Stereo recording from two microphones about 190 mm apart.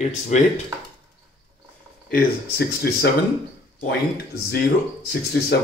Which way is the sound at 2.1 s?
55° left (ahead or behind).